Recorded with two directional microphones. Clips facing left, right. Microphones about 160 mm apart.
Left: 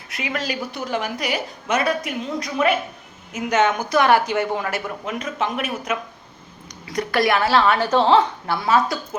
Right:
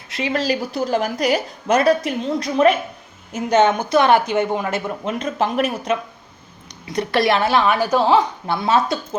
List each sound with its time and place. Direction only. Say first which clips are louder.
0.1 s a woman's voice: right 6 dB; 30° right (ahead or behind)